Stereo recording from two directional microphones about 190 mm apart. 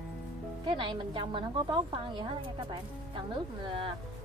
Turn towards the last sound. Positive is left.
turn(degrees=-30)  # may be behind; listen again after turning